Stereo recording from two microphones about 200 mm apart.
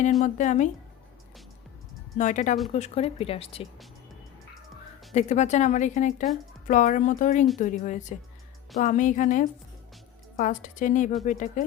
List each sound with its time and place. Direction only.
0.2 s speech: 35° left (ahead or behind)
2.1 s speech: 40° left (ahead or behind)
5.1 s speech: 35° left (ahead or behind)